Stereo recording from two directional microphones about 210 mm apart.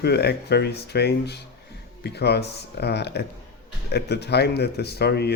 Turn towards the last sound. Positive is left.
turn(degrees=50)  # may be behind; listen again after turning